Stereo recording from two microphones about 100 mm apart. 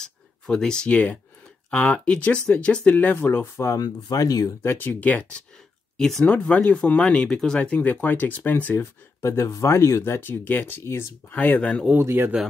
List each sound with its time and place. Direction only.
0.0 s speech: 5° left (ahead or behind); by 3.8 s 25° left (ahead or behind)
3.8 s speech: 35° left (ahead or behind)
4.6 s speech: 20° left (ahead or behind)
9.2 s speech: 25° left (ahead or behind)
12.0 s speech: 25° right (ahead or behind)